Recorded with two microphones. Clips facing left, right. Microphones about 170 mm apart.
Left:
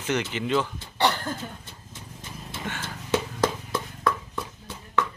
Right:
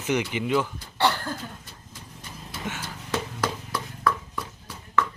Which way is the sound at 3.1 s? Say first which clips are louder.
Left 4 dB; 25° left (ahead or behind).